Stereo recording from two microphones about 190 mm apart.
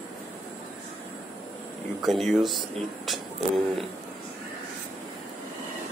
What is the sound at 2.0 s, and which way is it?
Speech, centre (ahead or behind).